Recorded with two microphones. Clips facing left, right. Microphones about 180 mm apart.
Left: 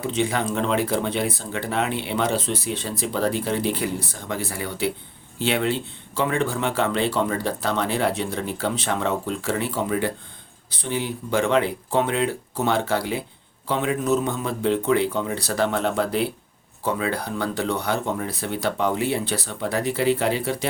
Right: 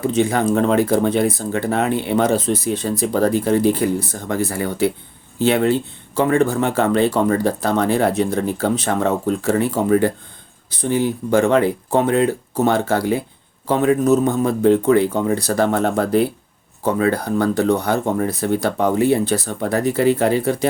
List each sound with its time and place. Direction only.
0.0 s speech: 45° right (ahead or behind)